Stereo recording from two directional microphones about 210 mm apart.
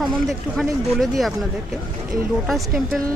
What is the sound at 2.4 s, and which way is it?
Speech, centre (ahead or behind).